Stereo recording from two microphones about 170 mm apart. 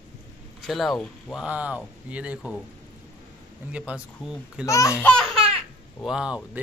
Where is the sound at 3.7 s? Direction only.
5° right (ahead or behind).